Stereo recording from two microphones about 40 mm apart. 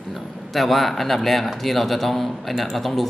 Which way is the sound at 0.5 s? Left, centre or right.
Centre.